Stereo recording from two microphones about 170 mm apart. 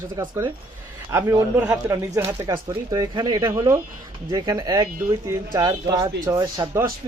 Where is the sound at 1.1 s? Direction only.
15° right (ahead or behind).